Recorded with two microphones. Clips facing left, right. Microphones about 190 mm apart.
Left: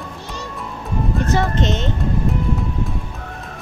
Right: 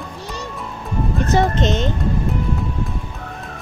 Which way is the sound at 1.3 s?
20° right (ahead or behind).